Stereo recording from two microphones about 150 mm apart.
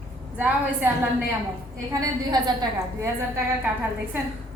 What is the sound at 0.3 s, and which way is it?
Speech, 10° right (ahead or behind).